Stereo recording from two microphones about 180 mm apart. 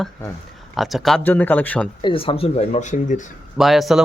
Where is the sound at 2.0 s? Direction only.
30° left (ahead or behind).